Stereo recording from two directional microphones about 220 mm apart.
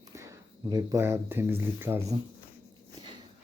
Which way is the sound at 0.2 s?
15° right (ahead or behind).